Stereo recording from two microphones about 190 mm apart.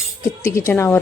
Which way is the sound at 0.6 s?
15° left (ahead or behind).